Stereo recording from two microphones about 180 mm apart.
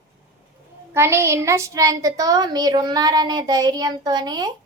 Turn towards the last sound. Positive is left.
turn(degrees=-20)  # may be behind; listen again after turning